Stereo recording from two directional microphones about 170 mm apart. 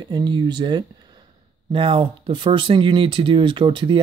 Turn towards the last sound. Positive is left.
turn(degrees=-30)  # may be behind; listen again after turning